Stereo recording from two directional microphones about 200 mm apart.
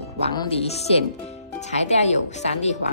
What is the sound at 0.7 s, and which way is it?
Speech, 35° left (ahead or behind).